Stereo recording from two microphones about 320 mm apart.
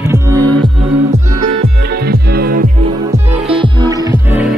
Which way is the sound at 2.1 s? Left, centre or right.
Right.